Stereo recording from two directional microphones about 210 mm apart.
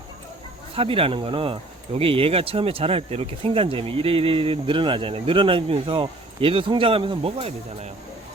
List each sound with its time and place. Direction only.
0.8 s speech: 25° right (ahead or behind)